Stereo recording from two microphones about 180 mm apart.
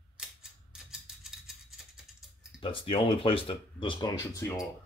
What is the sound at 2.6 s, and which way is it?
Speech, 30° left (ahead or behind).